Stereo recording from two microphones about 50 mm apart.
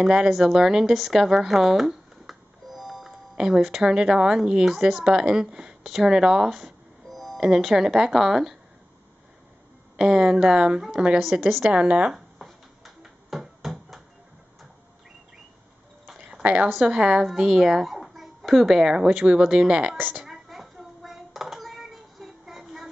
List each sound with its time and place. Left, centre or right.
0.0 s speech: centre
7.3 s speech: centre
9.9 s speech: centre
12.4 s a sound: centre
16.4 s a woman's voice: right
16.7 s a child's voice: centre
20.0 s a woman's voice: right
20.2 s a sound: centre
22.6 s music: centre